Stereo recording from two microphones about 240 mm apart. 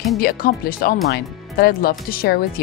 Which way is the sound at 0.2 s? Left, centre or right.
Left.